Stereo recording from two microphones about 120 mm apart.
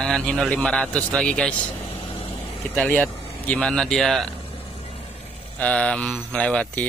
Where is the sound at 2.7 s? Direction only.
15° left (ahead or behind).